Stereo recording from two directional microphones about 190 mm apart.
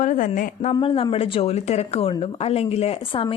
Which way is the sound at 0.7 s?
30° left (ahead or behind).